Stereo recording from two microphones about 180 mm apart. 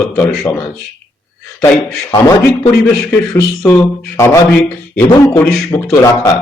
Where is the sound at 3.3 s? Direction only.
15° left (ahead or behind).